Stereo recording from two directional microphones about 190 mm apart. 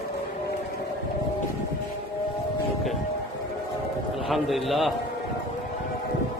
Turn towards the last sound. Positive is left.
turn(degrees=0)  # may be behind; listen again after turning